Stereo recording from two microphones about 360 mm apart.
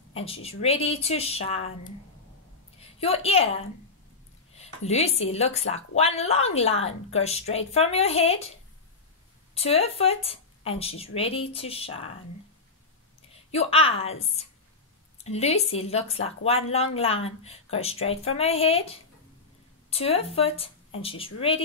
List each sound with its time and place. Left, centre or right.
0.1 s speech: centre
3.0 s speech: centre
13.3 s a woman's voice: centre